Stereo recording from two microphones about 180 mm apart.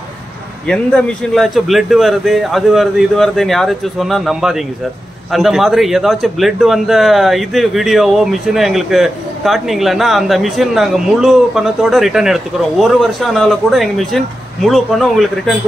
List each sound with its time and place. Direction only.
0.7 s a man's voice: 5° left (ahead or behind)